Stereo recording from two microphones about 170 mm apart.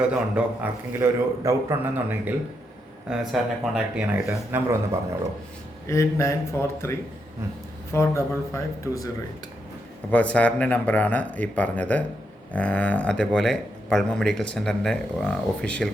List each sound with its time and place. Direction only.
0.0 s a man's voice: 5° right (ahead or behind)
5.9 s speech: 15° left (ahead or behind)
7.9 s speech: 15° left (ahead or behind)
10.1 s a man's voice: 10° left (ahead or behind)